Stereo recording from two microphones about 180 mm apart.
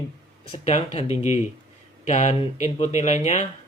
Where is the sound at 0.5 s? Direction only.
35° left (ahead or behind).